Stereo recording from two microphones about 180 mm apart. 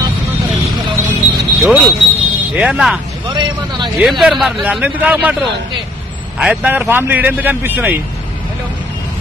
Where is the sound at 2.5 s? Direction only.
5° right (ahead or behind).